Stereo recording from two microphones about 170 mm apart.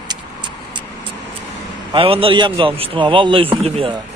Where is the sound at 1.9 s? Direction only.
30° right (ahead or behind).